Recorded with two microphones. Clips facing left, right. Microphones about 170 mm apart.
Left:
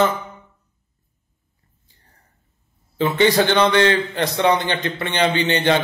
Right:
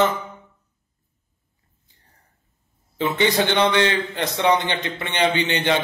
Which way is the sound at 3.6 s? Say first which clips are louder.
Left 3 dB; 20° right (ahead or behind).